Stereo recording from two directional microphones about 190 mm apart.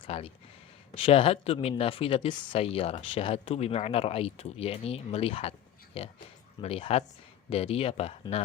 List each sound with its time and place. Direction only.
0.0 s speech: 30° left (ahead or behind)